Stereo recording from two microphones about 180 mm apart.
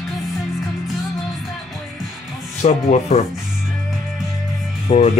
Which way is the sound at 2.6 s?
40° left (ahead or behind).